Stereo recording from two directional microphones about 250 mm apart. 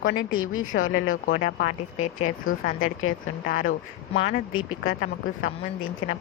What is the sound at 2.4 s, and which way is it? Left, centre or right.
A woman's voice, left.